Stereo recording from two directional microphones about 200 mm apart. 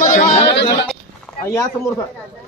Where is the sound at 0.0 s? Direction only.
40° left (ahead or behind).